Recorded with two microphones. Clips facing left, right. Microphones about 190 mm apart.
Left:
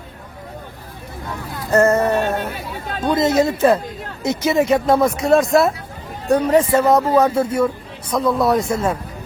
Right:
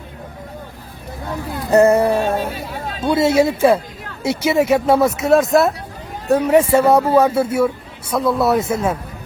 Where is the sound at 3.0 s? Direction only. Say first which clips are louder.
Right 2 dB; 10° right (ahead or behind).